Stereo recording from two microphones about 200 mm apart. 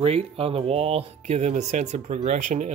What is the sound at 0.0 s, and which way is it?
Speech, 30° right (ahead or behind).